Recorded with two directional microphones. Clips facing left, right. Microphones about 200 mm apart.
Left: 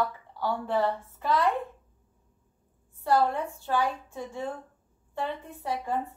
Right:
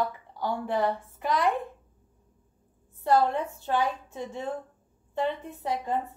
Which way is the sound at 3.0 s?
20° right (ahead or behind).